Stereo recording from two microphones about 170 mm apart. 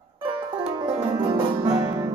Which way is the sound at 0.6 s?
25° right (ahead or behind).